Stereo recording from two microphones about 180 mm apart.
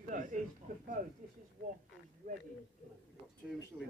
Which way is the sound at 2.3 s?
45° right (ahead or behind).